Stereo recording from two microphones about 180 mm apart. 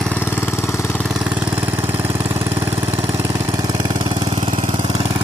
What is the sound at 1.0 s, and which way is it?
Vehicle, 5° right (ahead or behind).